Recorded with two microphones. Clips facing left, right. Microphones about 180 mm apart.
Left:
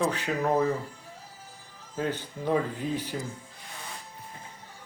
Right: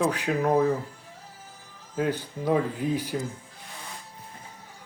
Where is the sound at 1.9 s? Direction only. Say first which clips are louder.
Right 3 dB; 10° right (ahead or behind).